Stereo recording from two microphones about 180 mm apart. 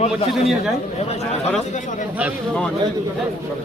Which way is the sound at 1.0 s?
35° left (ahead or behind).